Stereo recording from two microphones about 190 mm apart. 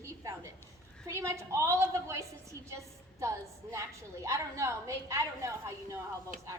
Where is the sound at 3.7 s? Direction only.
15° right (ahead or behind).